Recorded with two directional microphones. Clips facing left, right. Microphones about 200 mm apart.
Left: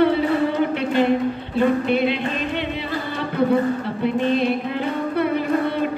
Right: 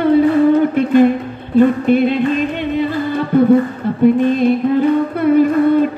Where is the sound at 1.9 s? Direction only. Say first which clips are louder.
Right 8 dB; 45° right (ahead or behind).